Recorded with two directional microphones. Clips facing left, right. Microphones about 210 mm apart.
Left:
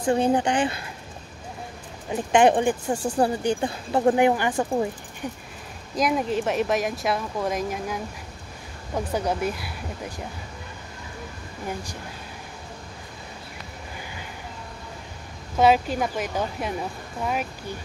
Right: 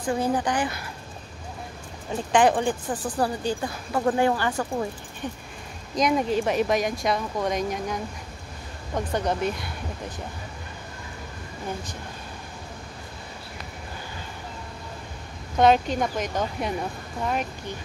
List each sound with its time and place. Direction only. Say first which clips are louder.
0.0 s speech: left 4 dB; 25° left (ahead or behind)
2.0 s speech: left 2 dB; 20° left (ahead or behind); by 10.2 s 5° left (ahead or behind)
15.5 s speech: even; 5° left (ahead or behind)